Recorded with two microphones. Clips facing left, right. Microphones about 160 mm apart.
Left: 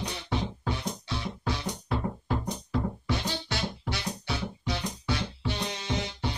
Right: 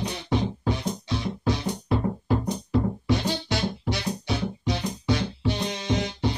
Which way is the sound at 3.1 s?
15° right (ahead or behind).